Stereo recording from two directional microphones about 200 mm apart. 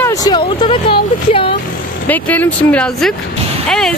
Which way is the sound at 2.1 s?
10° left (ahead or behind).